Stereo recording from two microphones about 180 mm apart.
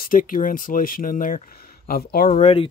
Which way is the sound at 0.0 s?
50° left (ahead or behind).